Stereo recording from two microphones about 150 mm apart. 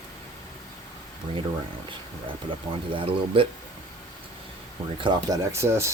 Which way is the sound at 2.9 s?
35° right (ahead or behind).